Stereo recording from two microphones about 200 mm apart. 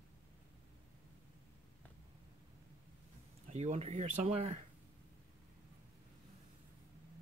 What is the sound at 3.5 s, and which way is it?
Speech, 35° right (ahead or behind).